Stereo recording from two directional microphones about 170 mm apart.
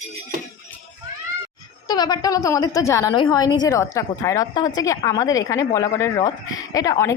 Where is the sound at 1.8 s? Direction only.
25° left (ahead or behind).